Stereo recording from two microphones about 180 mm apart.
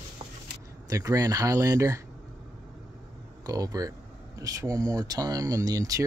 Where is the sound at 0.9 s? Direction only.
20° right (ahead or behind).